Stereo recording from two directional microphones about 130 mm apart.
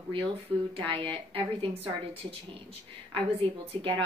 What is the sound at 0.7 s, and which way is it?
A woman's voice, 40° right (ahead or behind).